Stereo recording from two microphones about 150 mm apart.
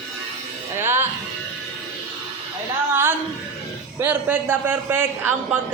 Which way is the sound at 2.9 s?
15° right (ahead or behind).